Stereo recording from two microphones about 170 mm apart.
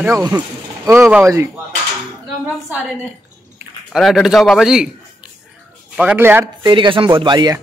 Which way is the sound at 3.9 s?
Centre (ahead or behind).